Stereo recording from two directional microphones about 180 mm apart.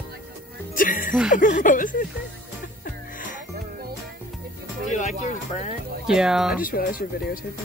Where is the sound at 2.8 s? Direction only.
50° left (ahead or behind).